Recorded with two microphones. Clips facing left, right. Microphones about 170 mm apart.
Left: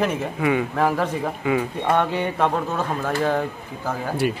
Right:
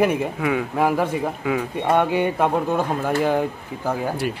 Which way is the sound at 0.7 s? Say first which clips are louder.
Right 1 dB; 10° right (ahead or behind).